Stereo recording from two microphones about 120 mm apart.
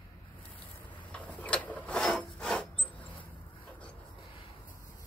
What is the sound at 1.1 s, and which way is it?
Rub, 10° left (ahead or behind).